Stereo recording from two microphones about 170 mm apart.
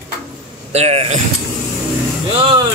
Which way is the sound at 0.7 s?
40° right (ahead or behind).